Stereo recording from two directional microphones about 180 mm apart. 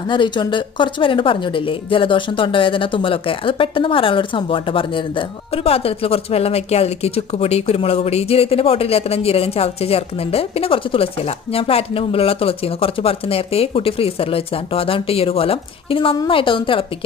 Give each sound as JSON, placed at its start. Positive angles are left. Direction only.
{"t": 0.1, "sound": "a woman's voice", "side_deg": 25}